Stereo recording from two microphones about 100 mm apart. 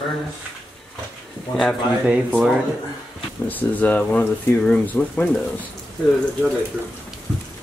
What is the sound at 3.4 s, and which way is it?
Speech, 15° left (ahead or behind).